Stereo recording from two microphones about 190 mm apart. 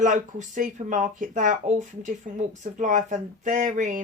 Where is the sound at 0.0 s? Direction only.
40° right (ahead or behind).